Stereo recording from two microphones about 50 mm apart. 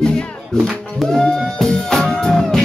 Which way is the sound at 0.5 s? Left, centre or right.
Centre.